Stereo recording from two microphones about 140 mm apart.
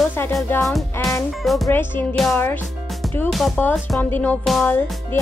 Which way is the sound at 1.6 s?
15° left (ahead or behind).